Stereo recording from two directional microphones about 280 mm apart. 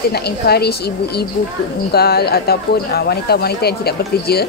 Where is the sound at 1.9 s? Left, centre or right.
Left.